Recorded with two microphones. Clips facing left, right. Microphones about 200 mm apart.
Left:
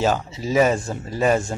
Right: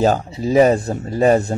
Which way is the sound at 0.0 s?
40° right (ahead or behind).